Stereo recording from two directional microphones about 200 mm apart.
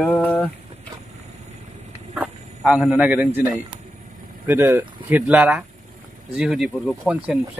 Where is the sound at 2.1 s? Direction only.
Centre (ahead or behind).